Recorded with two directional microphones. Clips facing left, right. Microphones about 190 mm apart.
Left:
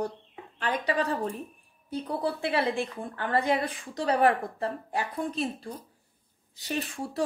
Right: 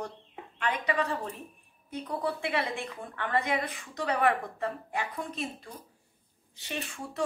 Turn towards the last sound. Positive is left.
turn(degrees=35)  # may be behind; listen again after turning